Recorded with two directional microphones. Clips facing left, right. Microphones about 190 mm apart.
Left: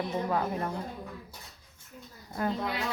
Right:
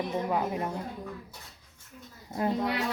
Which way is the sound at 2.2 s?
25° right (ahead or behind).